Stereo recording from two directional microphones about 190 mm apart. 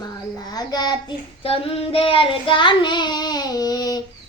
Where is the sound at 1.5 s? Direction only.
30° left (ahead or behind).